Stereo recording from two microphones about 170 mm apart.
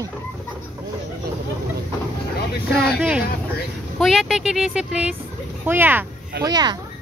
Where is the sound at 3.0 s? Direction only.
5° right (ahead or behind).